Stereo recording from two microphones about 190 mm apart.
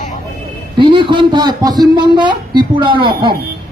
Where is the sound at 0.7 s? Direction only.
25° right (ahead or behind).